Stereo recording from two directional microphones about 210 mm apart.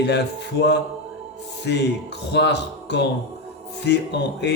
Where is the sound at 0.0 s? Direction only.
55° left (ahead or behind).